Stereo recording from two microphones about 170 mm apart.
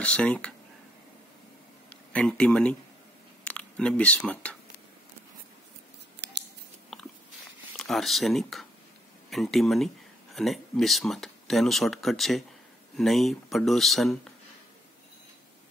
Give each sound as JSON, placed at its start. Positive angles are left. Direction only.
{"t": 0.0, "sound": "speech", "side_deg": 5}
{"t": 2.1, "sound": "speech", "side_deg": 5}
{"t": 6.2, "sound": "scissors", "side_deg": -90}
{"t": 7.7, "sound": "speech", "side_deg": 0}